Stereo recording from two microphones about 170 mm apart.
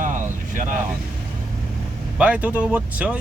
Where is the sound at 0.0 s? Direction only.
50° right (ahead or behind).